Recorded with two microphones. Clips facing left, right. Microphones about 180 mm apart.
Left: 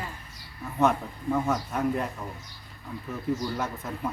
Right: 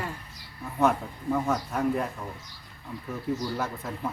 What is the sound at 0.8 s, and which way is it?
Speech, 5° right (ahead or behind).